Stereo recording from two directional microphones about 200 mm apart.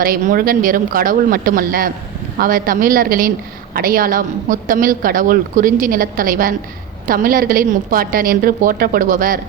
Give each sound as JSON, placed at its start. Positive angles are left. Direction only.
{"t": 0.0, "sound": "a woman's voice", "side_deg": -45}